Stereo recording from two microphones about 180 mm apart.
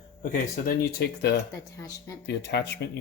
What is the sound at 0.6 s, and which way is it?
Speech, 60° left (ahead or behind).